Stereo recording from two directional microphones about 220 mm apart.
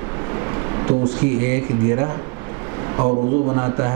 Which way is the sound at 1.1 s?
10° right (ahead or behind).